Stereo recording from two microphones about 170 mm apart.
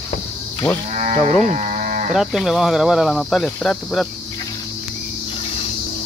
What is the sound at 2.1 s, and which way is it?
Cricket, centre (ahead or behind).